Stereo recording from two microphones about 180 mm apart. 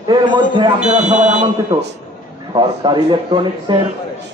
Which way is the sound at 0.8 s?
40° right (ahead or behind).